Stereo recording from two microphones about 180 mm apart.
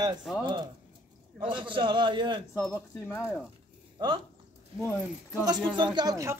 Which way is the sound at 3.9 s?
25° right (ahead or behind).